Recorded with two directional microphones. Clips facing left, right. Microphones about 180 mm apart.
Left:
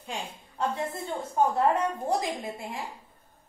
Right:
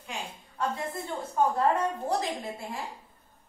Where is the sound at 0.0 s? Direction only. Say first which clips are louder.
Left 2 dB; 25° left (ahead or behind).